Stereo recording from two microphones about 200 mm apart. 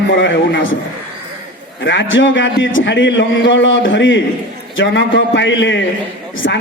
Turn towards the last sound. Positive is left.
turn(degrees=60)  # may be behind; listen again after turning